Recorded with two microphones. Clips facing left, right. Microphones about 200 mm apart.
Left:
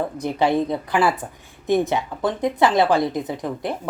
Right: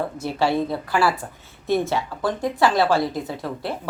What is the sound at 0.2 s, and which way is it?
A woman's voice, 20° left (ahead or behind).